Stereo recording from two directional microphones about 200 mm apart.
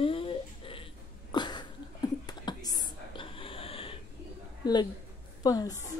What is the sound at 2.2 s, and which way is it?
Whispering, 20° left (ahead or behind).